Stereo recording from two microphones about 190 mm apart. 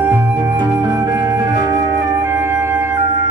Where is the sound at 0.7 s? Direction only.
20° right (ahead or behind).